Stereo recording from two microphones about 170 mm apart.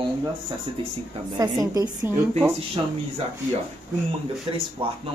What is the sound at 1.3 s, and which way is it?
Speech, 20° right (ahead or behind).